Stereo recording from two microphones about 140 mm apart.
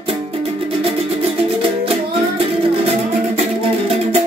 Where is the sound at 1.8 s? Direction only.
45° right (ahead or behind).